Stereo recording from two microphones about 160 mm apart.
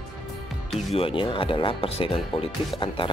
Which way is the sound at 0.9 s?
35° left (ahead or behind).